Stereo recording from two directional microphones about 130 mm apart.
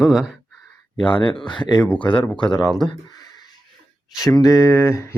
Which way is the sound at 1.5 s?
35° left (ahead or behind).